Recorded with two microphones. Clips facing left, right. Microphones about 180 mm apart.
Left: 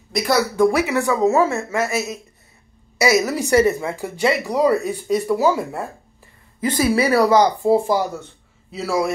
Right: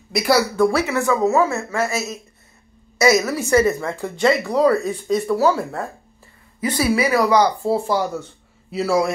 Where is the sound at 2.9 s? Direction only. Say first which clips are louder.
Right 1 dB; 10° left (ahead or behind).